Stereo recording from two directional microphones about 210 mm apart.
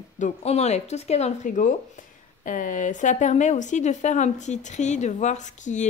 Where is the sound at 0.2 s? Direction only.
30° left (ahead or behind).